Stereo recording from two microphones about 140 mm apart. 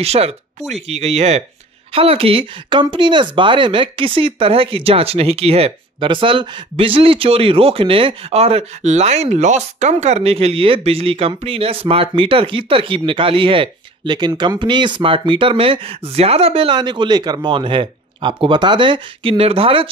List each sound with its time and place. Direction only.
0.0 s speech: 45° right (ahead or behind)